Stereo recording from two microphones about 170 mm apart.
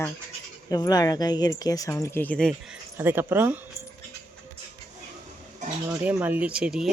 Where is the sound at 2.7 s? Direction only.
10° right (ahead or behind).